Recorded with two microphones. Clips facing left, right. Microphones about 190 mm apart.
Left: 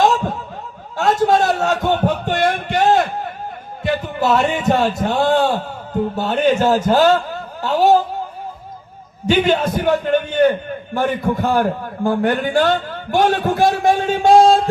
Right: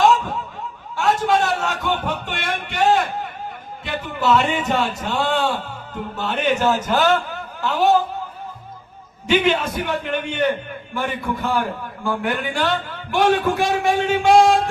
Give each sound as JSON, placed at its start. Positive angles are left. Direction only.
{"t": 0.0, "sound": "snicker", "side_deg": 40}
{"t": 1.0, "sound": "a sound", "side_deg": 40}
{"t": 3.8, "sound": "a man's voice", "side_deg": 40}
{"t": 9.3, "sound": "a man's voice", "side_deg": 35}